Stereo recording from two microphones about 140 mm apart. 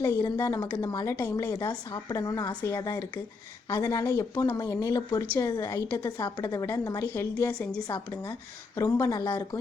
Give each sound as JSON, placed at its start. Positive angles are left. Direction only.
{"t": 0.0, "sound": "a woman's voice", "side_deg": 25}
{"t": 1.1, "sound": "a woman's voice", "side_deg": 15}
{"t": 1.5, "sound": "a woman's voice", "side_deg": 30}